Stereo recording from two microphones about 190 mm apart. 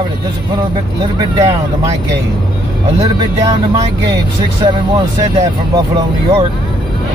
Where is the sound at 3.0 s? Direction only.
20° right (ahead or behind).